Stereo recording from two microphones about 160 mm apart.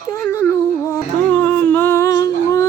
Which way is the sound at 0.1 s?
15° left (ahead or behind).